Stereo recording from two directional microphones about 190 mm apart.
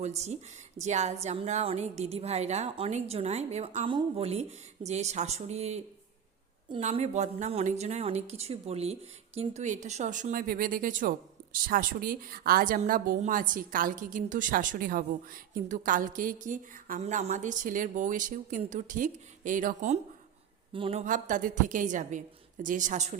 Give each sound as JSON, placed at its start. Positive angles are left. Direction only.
{"t": 0.0, "sound": "a woman's voice", "side_deg": -35}
{"t": 20.7, "sound": "speech", "side_deg": -30}
{"t": 21.0, "sound": "a woman's voice", "side_deg": -40}